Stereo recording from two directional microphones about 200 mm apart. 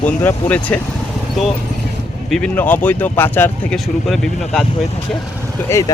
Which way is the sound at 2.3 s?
5° left (ahead or behind).